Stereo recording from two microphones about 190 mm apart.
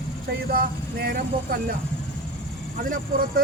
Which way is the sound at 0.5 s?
55° right (ahead or behind).